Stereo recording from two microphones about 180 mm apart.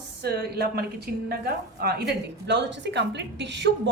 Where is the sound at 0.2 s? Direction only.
60° right (ahead or behind).